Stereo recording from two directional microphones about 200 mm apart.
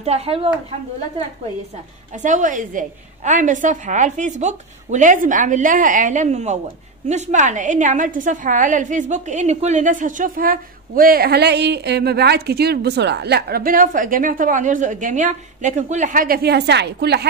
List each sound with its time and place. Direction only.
0.0 s a woman's voice: 30° right (ahead or behind)
2.2 s a woman's voice: 40° right (ahead or behind); by 17.3 s 55° right (ahead or behind)